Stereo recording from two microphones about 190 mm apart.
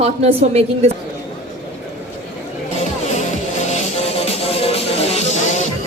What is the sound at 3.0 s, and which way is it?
Music, 40° left (ahead or behind).